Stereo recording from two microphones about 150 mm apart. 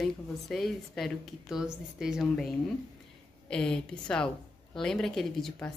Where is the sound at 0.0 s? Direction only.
Centre (ahead or behind).